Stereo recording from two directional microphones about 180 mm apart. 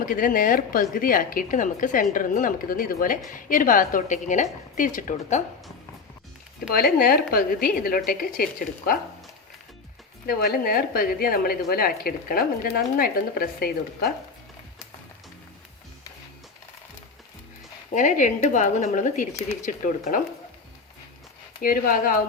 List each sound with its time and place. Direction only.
0.0 s a woman's voice: 50° left (ahead or behind)
6.7 s a woman's voice: 55° left (ahead or behind)
10.2 s a woman's voice: 55° left (ahead or behind)
17.9 s a woman's voice: 45° left (ahead or behind)
21.6 s a woman's voice: 50° left (ahead or behind)